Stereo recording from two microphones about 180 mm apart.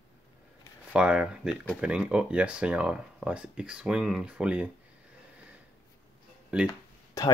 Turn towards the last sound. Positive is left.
turn(degrees=15)  # may be behind; listen again after turning